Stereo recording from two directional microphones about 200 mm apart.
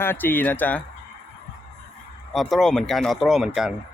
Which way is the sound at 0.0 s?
10° left (ahead or behind).